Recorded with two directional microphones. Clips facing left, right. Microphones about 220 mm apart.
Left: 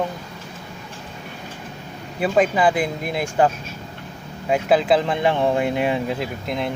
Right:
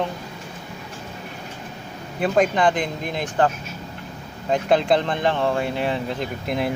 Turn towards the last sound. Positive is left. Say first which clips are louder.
# right 1 dB
turn(degrees=-5)  # may be behind; listen again after turning